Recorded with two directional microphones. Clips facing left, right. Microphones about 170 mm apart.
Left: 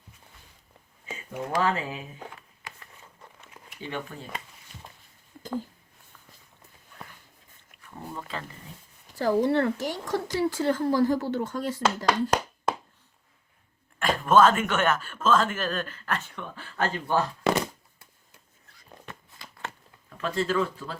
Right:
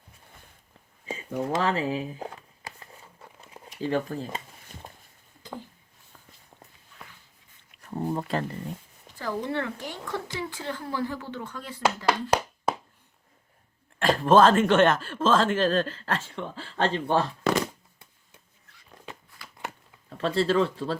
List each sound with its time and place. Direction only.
1.0 s a sound: 35° right (ahead or behind)
3.8 s speech: 35° right (ahead or behind)
8.1 s speech: 40° right (ahead or behind)
9.1 s speech: 40° left (ahead or behind)
12.0 s hands: 10° right (ahead or behind)
14.0 s speech: 35° right (ahead or behind)
19.4 s a sound: 20° left (ahead or behind)
20.1 s speech: 30° right (ahead or behind)